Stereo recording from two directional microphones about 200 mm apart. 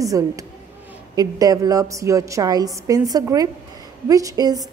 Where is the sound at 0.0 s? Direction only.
15° right (ahead or behind).